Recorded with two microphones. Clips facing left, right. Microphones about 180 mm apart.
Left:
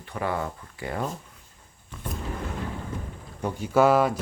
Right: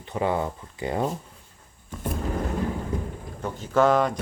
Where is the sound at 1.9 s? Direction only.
45° right (ahead or behind).